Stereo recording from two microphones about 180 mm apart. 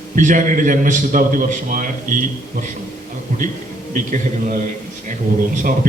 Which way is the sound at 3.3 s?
45° right (ahead or behind).